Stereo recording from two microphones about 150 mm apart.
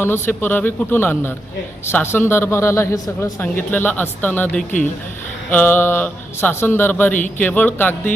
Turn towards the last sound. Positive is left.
turn(degrees=15)  # may be behind; listen again after turning